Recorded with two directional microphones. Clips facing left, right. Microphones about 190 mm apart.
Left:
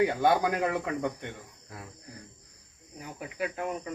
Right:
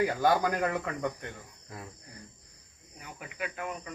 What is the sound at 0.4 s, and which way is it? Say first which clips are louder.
Speech: left 1 dB; 5° left (ahead or behind).